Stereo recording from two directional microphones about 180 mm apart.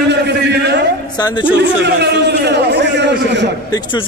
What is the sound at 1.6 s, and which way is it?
A man's voice, 70° right (ahead or behind).